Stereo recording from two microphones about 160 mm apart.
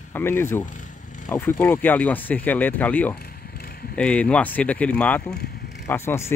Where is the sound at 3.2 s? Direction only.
70° left (ahead or behind).